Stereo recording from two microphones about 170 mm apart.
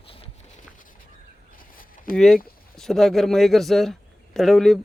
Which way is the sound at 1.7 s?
55° left (ahead or behind).